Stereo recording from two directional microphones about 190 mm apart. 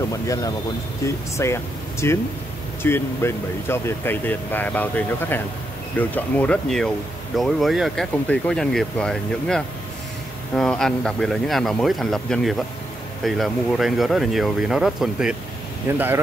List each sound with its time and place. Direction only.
0.1 s speech: 15° left (ahead or behind); by 16.0 s 10° right (ahead or behind)